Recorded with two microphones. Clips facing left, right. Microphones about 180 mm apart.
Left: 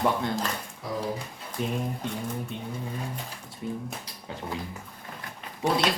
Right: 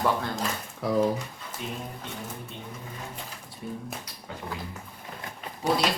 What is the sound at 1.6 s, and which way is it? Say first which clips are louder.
Speech: left 6 dB; 50° left (ahead or behind).